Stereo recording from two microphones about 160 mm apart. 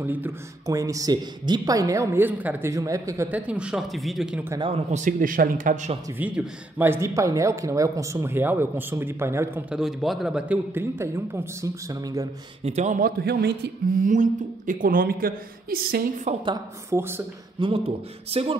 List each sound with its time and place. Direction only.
0.0 s a woman's voice: 10° right (ahead or behind)
4.9 s a woman's voice: 55° right (ahead or behind)
6.0 s a woman's voice: 10° right (ahead or behind)
9.8 s a woman's voice: centre (ahead or behind); by 12.3 s 20° right (ahead or behind)
12.6 s a man's voice: 45° right (ahead or behind)
13.2 s a woman's voice: 85° right; by 16.1 s 70° right (ahead or behind)
16.9 s a woman's voice: 15° right (ahead or behind)
17.6 s speech: 35° right (ahead or behind)